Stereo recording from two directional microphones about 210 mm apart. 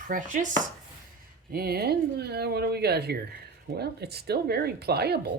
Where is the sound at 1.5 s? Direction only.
45° right (ahead or behind).